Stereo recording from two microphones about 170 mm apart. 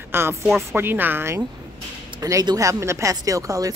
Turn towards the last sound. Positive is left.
turn(degrees=-20)  # may be behind; listen again after turning